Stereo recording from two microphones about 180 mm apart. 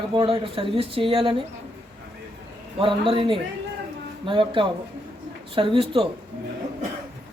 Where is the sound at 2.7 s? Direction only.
30° right (ahead or behind).